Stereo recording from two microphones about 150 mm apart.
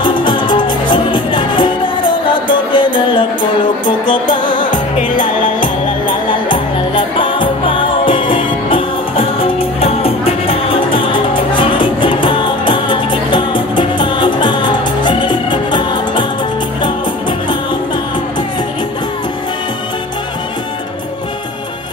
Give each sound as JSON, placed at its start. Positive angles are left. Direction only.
{"t": 0.0, "sound": "music", "side_deg": 35}
{"t": 4.9, "sound": "music", "side_deg": 60}
{"t": 5.6, "sound": "music", "side_deg": 35}